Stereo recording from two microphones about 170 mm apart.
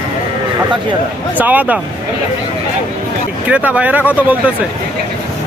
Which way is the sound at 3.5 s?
10° right (ahead or behind).